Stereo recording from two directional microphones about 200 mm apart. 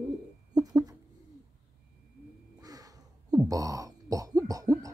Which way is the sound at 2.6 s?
20° right (ahead or behind).